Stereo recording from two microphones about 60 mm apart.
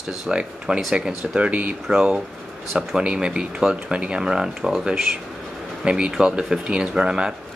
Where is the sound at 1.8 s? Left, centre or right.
Centre.